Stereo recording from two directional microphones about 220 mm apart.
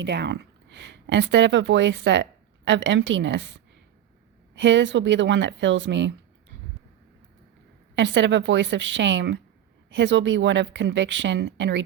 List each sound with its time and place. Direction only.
0.0 s a woman's voice: 50° right (ahead or behind)
7.9 s a woman's voice: 55° right (ahead or behind)